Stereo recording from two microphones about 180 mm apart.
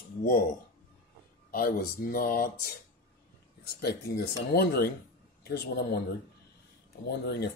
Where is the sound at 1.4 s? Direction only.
55° left (ahead or behind).